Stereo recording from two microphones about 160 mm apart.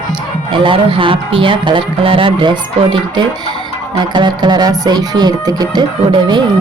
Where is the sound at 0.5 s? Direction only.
30° right (ahead or behind).